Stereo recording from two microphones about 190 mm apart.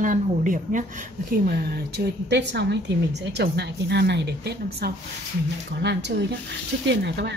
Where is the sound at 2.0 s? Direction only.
60° right (ahead or behind).